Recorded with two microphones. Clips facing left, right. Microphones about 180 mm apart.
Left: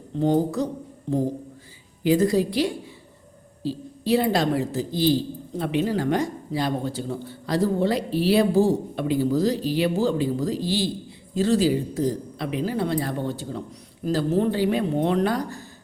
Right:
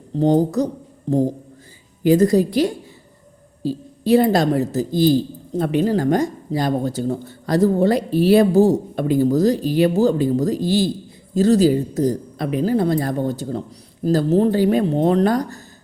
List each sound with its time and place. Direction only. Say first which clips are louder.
0.2 s speech: right 5 dB; 40° right (ahead or behind)
2.0 s speech: right 5 dB; 45° right (ahead or behind)